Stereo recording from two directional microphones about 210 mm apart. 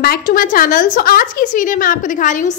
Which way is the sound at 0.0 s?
45° left (ahead or behind).